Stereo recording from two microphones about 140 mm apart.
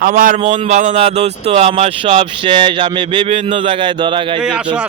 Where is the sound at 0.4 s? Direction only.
40° right (ahead or behind).